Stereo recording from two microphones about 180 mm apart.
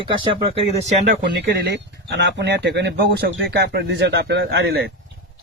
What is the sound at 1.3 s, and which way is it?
Speech, 65° right (ahead or behind).